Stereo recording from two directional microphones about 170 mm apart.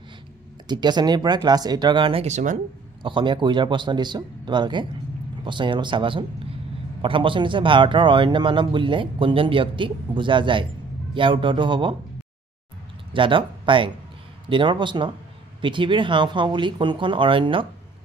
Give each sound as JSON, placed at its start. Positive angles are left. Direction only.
{"t": 0.7, "sound": "speech", "side_deg": -25}
{"t": 2.2, "sound": "speech", "side_deg": -45}
{"t": 3.0, "sound": "speech", "side_deg": -30}
{"t": 13.1, "sound": "speech", "side_deg": -30}